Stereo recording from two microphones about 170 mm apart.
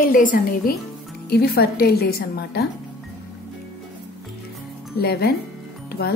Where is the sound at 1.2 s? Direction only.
65° left (ahead or behind).